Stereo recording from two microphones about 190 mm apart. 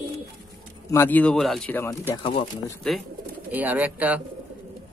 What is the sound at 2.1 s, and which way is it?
Speech, 25° left (ahead or behind).